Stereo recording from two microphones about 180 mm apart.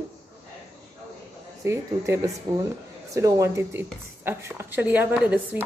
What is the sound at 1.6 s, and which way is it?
Speech, 15° right (ahead or behind).